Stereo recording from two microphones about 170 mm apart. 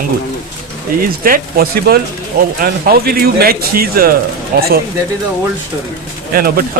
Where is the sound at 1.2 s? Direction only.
60° right (ahead or behind).